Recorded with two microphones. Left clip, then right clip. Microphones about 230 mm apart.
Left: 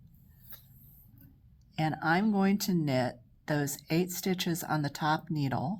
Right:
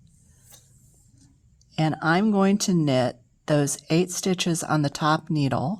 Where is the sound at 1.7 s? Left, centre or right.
Right.